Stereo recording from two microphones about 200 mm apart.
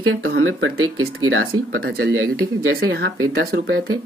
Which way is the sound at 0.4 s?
80° right.